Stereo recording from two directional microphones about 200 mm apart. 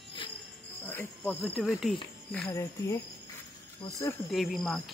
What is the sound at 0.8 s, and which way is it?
Speech, 10° left (ahead or behind).